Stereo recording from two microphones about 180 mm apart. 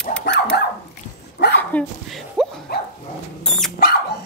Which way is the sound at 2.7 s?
60° left (ahead or behind).